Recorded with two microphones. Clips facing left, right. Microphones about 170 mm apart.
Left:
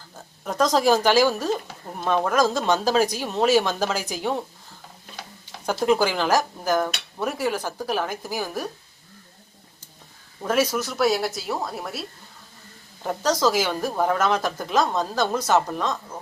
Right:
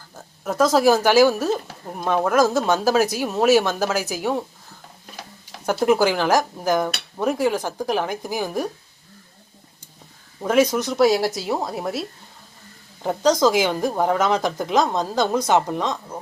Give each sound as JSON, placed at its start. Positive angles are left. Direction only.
{"t": 0.4, "sound": "speech", "side_deg": -5}
{"t": 5.5, "sound": "speech", "side_deg": -10}
{"t": 10.4, "sound": "speech", "side_deg": -15}
{"t": 11.7, "sound": "speech", "side_deg": 0}